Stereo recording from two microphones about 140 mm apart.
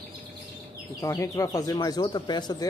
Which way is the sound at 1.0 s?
20° left (ahead or behind).